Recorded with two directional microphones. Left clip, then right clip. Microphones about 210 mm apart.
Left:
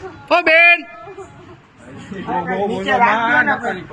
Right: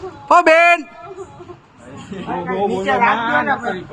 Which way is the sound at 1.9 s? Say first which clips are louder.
Even; 10° left (ahead or behind).